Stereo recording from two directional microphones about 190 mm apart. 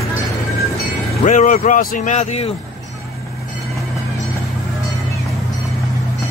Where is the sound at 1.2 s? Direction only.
40° left (ahead or behind).